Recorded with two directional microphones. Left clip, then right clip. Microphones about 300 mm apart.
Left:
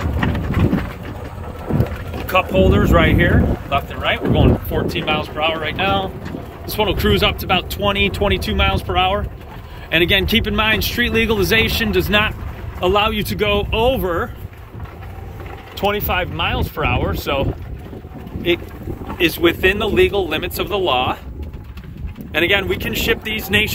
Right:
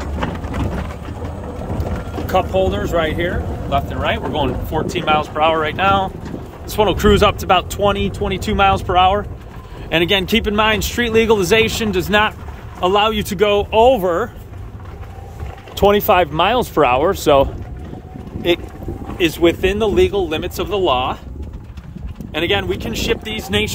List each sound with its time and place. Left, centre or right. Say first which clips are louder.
2.2 s speech: left 1 dB; centre
15.7 s speech: right 7 dB; right
19.1 s speech: right 1 dB; centre
22.3 s speech: left 2 dB; centre